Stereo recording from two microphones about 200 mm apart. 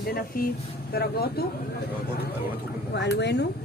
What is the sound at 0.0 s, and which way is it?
Speech, 50° left (ahead or behind).